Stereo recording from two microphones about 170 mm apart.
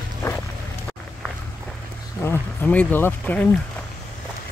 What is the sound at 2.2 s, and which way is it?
Speech, 10° left (ahead or behind).